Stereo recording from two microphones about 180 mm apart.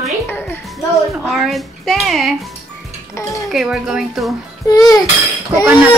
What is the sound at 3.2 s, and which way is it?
Speech, 15° left (ahead or behind).